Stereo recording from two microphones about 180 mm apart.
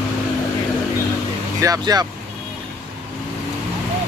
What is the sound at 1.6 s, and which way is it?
Speech, 20° right (ahead or behind).